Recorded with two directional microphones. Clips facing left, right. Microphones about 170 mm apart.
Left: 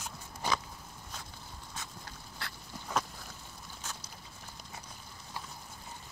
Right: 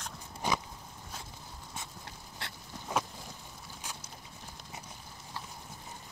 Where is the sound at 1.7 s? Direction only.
20° right (ahead or behind).